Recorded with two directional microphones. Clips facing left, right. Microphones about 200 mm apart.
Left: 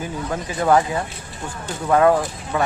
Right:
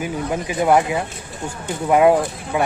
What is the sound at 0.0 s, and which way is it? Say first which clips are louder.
Speech: right 3 dB; 15° right (ahead or behind).